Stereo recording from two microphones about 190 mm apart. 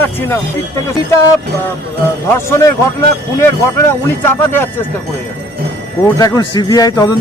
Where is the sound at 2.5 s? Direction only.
15° left (ahead or behind).